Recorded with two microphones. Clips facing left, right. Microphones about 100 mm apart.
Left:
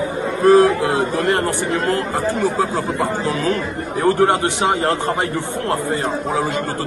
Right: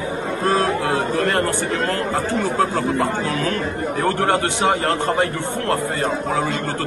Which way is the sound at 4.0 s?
20° left (ahead or behind).